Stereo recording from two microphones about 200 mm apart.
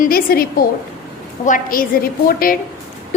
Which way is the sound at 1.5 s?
45° left (ahead or behind).